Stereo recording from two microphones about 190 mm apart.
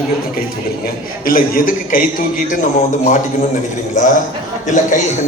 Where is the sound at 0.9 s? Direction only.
50° left (ahead or behind).